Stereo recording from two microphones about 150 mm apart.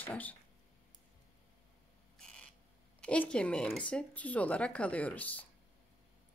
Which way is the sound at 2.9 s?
5° left (ahead or behind).